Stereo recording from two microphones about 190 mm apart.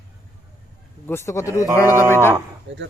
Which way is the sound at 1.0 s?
15° left (ahead or behind).